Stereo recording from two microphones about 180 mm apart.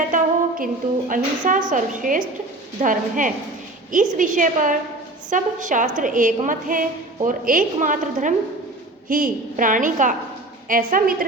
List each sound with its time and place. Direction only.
0.1 s music: 45° right (ahead or behind)
0.6 s a woman's voice: 50° right (ahead or behind)